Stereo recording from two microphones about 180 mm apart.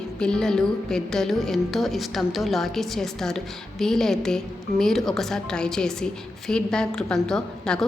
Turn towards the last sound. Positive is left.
turn(degrees=5)  # may be behind; listen again after turning